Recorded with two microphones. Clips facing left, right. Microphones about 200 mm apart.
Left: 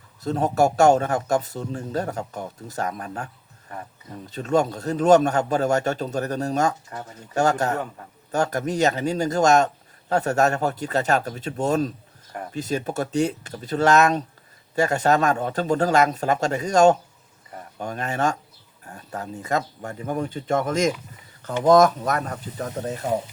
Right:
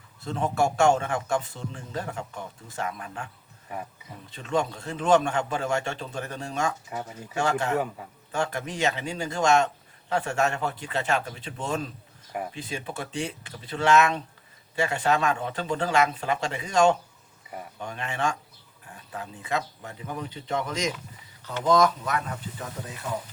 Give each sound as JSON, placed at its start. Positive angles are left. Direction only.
{"t": 0.2, "sound": "speech", "side_deg": 40}
{"t": 3.7, "sound": "speech", "side_deg": -10}
{"t": 4.3, "sound": "speech", "side_deg": 40}